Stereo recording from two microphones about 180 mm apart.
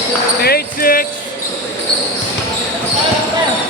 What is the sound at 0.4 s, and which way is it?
Basketball bounce, 55° left (ahead or behind).